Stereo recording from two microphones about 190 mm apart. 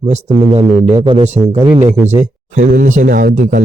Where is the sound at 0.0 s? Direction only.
30° right (ahead or behind).